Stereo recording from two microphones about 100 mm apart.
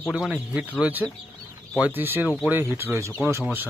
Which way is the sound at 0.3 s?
10° right (ahead or behind).